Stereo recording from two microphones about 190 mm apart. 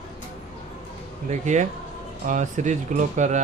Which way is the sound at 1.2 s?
40° right (ahead or behind).